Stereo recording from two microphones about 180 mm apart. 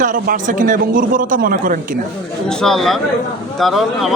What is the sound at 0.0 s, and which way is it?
A man's voice, 45° right (ahead or behind).